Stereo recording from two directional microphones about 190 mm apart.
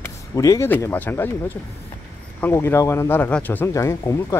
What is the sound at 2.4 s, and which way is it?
Speech, 10° left (ahead or behind).